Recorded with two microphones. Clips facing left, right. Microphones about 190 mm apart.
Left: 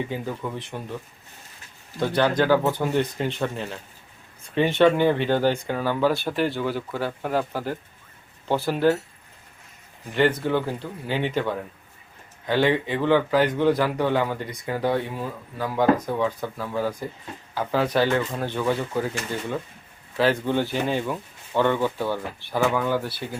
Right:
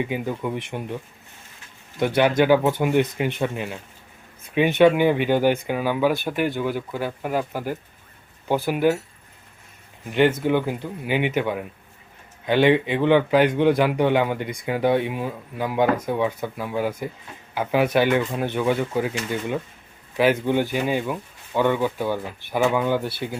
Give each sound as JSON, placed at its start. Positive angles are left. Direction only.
{"t": 0.0, "sound": "speech", "side_deg": -15}
{"t": 2.0, "sound": "speech", "side_deg": -15}
{"t": 10.1, "sound": "a man's voice", "side_deg": -20}
{"t": 20.1, "sound": "speech", "side_deg": -15}